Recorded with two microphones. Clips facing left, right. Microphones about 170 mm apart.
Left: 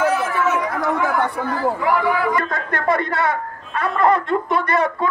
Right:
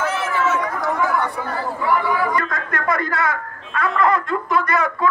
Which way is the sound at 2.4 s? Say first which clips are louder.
Left 2 dB; 30° left (ahead or behind).